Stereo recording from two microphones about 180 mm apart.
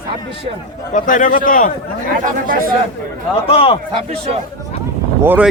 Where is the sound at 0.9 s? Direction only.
45° left (ahead or behind).